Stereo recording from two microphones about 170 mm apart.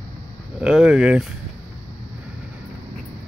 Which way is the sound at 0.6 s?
5° right (ahead or behind).